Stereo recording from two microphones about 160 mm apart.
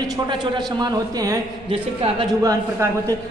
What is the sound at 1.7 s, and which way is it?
Speech, 35° right (ahead or behind).